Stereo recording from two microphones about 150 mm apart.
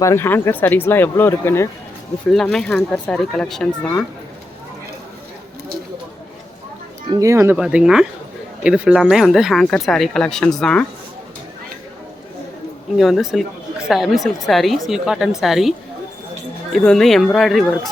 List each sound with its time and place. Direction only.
0.0 s speech: 15° left (ahead or behind)
2.3 s speech: 5° left (ahead or behind)
7.1 s speech: 20° right (ahead or behind)
7.5 s speech: 5° right (ahead or behind)
13.0 s speech: centre (ahead or behind)
16.7 s speech: 5° left (ahead or behind)